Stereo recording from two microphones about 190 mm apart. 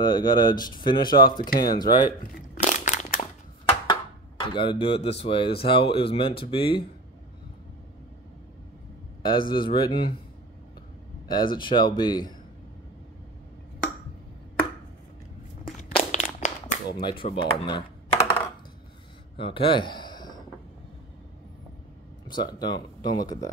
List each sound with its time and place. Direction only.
0.0 s speech: 25° left (ahead or behind)
1.4 s speech: 50° left (ahead or behind)
2.0 s crushing: 45° left (ahead or behind)
3.9 s speech: 25° left (ahead or behind)
9.2 s speech: 25° left (ahead or behind)
11.2 s speech: 25° left (ahead or behind)
15.9 s crumpling: 40° left (ahead or behind)
17.2 s speech: 25° left (ahead or behind)
19.3 s a sound: 25° left (ahead or behind)
22.4 s speech: 20° left (ahead or behind)